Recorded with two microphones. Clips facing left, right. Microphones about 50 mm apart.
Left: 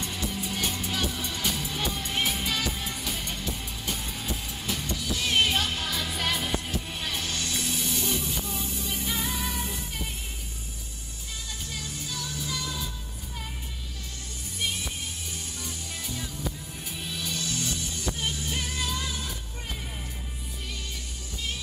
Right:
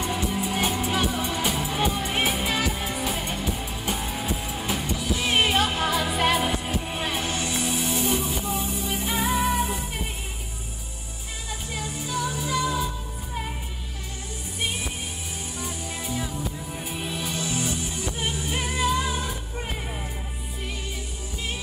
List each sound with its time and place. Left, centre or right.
0.0 s music: right
11.7 s music: centre
14.6 s music: right